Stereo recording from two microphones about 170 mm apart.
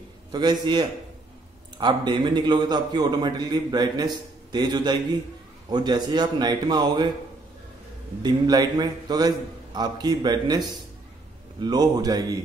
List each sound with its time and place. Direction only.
0.3 s a man's voice: 25° right (ahead or behind)
8.2 s a man's voice: 25° right (ahead or behind)